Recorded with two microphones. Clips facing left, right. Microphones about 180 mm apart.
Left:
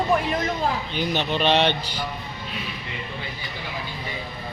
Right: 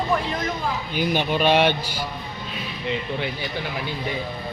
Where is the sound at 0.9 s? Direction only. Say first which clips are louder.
Right 7 dB; 10° right (ahead or behind).